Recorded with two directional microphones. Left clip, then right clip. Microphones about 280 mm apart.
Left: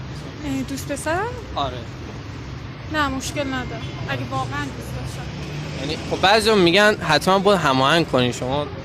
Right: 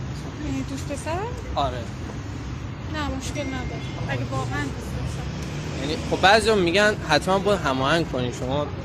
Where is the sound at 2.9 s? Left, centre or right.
Left.